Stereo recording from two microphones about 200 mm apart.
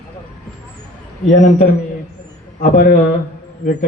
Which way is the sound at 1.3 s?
35° left (ahead or behind).